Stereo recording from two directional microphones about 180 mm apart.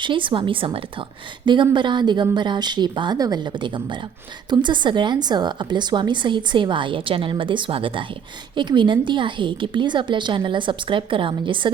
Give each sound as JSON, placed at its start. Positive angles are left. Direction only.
{"t": 0.0, "sound": "a woman's voice", "side_deg": -25}